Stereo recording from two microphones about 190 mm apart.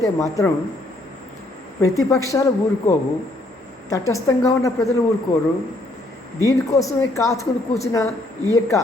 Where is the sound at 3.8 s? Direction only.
15° left (ahead or behind).